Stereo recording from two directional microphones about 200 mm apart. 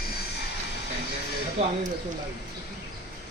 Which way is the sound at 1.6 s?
30° right (ahead or behind).